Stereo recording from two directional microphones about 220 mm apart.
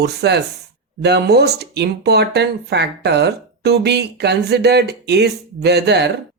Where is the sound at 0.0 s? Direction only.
50° right (ahead or behind).